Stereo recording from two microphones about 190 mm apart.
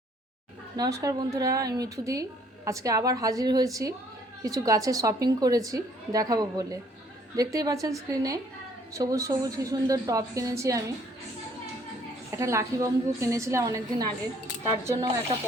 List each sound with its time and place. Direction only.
0.8 s a woman's voice: 20° right (ahead or behind)
12.3 s a woman's voice: 15° right (ahead or behind)